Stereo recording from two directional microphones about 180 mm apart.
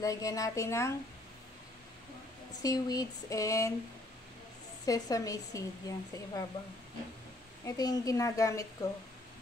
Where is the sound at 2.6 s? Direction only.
20° left (ahead or behind).